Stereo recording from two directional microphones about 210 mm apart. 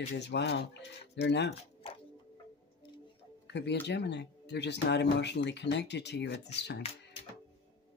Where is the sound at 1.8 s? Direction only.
25° left (ahead or behind).